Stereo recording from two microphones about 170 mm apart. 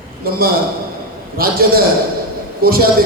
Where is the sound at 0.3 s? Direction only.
60° right (ahead or behind).